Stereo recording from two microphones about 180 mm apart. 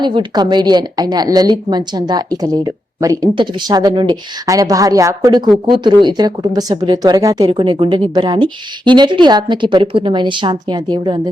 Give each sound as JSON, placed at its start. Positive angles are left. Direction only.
{"t": 0.0, "sound": "a woman's voice", "side_deg": -25}